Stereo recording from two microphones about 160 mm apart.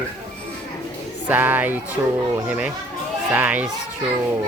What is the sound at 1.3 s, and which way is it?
Speech, 10° right (ahead or behind).